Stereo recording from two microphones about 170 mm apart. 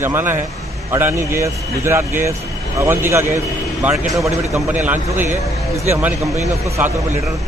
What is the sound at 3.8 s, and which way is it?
A man's voice, 5° right (ahead or behind).